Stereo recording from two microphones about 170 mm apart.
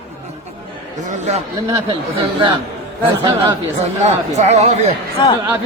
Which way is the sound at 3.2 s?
30° right (ahead or behind).